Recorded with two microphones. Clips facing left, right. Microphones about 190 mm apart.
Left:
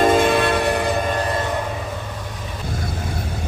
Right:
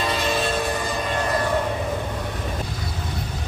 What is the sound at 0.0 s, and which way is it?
Train, 50° left (ahead or behind).